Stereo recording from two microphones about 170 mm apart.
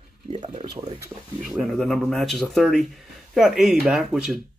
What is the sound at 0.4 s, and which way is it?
Speech, 30° right (ahead or behind).